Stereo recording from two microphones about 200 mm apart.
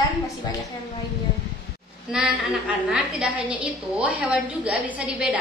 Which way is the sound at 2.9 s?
5° right (ahead or behind).